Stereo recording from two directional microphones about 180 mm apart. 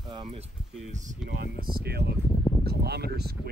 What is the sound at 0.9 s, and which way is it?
Speech, 45° right (ahead or behind).